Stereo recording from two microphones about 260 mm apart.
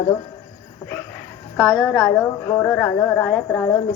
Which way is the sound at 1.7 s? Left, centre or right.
Centre.